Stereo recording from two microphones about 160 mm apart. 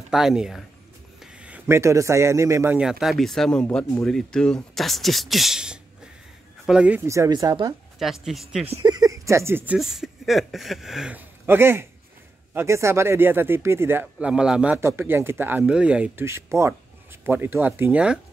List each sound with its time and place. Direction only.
0.1 s a man's voice: 5° right (ahead or behind)
2.8 s a man's voice: 5° right (ahead or behind)
7.1 s speech: 20° right (ahead or behind)
8.0 s a man's voice: centre (ahead or behind)
8.8 s speech: 25° right (ahead or behind)
9.8 s a man's voice: centre (ahead or behind)